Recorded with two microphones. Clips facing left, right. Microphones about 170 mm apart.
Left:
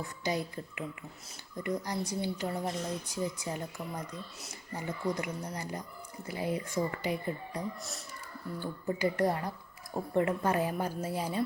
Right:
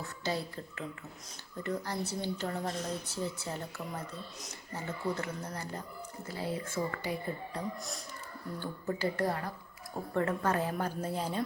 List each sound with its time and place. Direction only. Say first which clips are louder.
0.3 s speech: left 2 dB; 15° left (ahead or behind)